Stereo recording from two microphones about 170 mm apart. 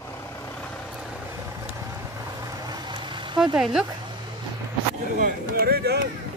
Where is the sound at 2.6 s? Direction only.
25° right (ahead or behind).